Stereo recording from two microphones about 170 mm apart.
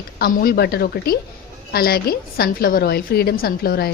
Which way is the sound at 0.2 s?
65° left (ahead or behind).